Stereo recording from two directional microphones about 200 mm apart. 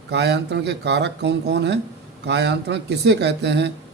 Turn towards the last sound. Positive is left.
turn(degrees=-60)  # may be behind; listen again after turning